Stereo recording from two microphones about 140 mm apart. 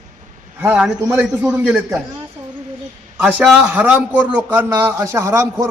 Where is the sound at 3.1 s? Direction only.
5° right (ahead or behind).